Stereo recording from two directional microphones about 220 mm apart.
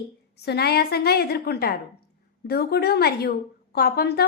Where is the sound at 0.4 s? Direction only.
45° left (ahead or behind).